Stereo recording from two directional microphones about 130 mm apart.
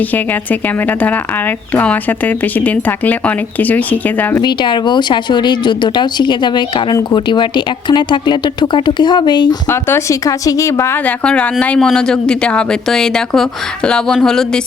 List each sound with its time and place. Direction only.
0.9 s speech: 15° left (ahead or behind)
4.4 s speech: 35° left (ahead or behind)
9.6 s a woman's voice: 20° left (ahead or behind); by 14.6 s 5° left (ahead or behind)